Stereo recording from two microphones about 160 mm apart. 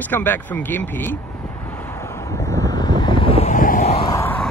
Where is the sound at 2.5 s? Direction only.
20° left (ahead or behind).